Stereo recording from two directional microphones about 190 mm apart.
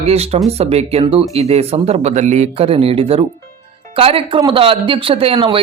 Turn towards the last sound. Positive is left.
turn(degrees=-25)  # may be behind; listen again after turning